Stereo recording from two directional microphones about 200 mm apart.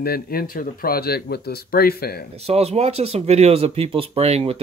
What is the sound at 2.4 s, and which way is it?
Speech, 30° right (ahead or behind).